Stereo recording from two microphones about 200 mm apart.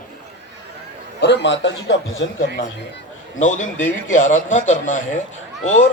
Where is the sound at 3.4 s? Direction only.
40° left (ahead or behind).